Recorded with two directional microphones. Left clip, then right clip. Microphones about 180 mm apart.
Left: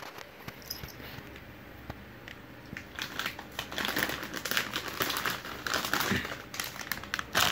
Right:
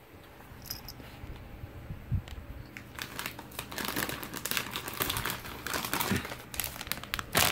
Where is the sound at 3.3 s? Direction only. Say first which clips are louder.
Left 3 dB; 45° right (ahead or behind).